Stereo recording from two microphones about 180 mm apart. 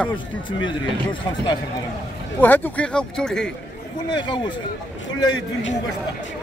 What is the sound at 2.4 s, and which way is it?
Speech, 10° left (ahead or behind).